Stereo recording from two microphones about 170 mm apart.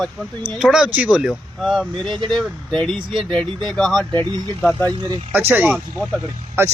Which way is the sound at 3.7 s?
Centre (ahead or behind).